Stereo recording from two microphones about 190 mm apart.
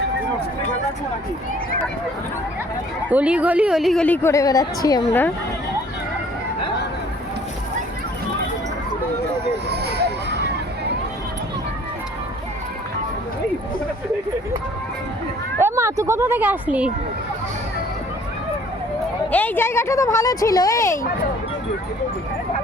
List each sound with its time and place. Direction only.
3.1 s a woman's voice: 5° right (ahead or behind); by 5.3 s 15° left (ahead or behind)
9.6 s a sound: 60° right (ahead or behind)
15.6 s speech: 15° right (ahead or behind)
19.3 s a woman's voice: 10° left (ahead or behind)